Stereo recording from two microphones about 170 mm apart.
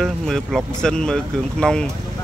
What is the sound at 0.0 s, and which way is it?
Speech, centre (ahead or behind).